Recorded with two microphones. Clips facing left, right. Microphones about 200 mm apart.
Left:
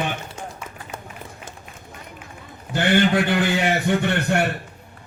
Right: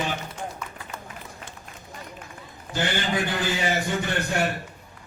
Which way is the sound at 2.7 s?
60° left (ahead or behind).